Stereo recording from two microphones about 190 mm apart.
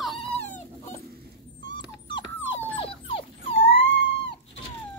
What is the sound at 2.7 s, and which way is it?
Dog, 30° left (ahead or behind).